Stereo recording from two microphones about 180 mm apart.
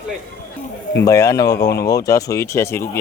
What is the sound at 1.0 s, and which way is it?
Speech, 15° left (ahead or behind).